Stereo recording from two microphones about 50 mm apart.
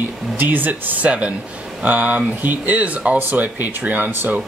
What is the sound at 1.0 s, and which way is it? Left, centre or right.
Speech, right.